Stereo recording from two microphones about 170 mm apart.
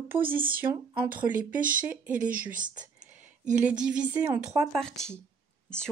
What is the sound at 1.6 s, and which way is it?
Speech, 55° right (ahead or behind).